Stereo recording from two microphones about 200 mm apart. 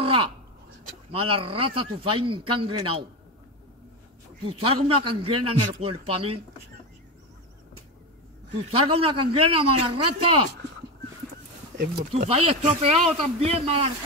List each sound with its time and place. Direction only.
0.0 s a sound: 25° right (ahead or behind)
1.1 s a man's voice: 25° right (ahead or behind)
4.5 s a man's voice: 30° right (ahead or behind)
8.6 s a man's voice: 25° right (ahead or behind)
12.1 s a man's voice: 30° right (ahead or behind)